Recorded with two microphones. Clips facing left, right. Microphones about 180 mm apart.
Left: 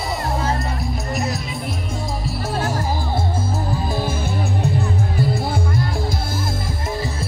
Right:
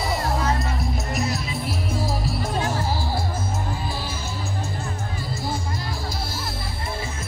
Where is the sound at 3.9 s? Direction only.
50° left (ahead or behind).